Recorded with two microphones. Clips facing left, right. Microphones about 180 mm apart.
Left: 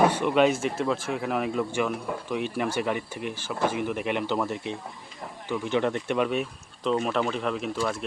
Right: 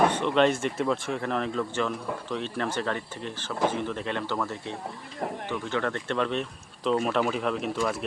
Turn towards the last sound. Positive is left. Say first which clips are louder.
# even
turn(degrees=0)  # may be behind; listen again after turning